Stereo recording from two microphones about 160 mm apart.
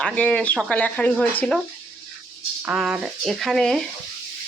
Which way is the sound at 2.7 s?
5° right (ahead or behind).